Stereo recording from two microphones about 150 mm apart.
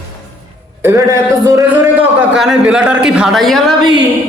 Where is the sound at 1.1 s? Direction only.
20° right (ahead or behind).